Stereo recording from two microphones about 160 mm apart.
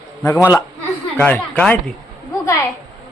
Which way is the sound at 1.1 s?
10° left (ahead or behind).